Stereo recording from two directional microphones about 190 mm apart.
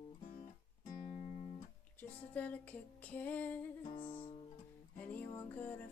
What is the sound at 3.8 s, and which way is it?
Music, 25° left (ahead or behind).